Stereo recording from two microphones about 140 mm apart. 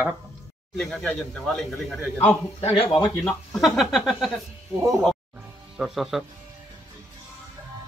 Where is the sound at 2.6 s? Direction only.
45° left (ahead or behind).